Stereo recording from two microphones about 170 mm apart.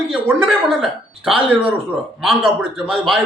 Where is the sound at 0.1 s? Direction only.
5° right (ahead or behind).